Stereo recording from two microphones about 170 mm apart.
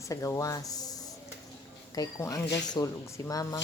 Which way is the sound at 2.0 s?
20° left (ahead or behind).